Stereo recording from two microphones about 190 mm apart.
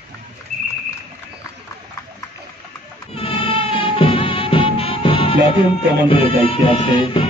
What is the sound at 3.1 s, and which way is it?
Music, 30° left (ahead or behind).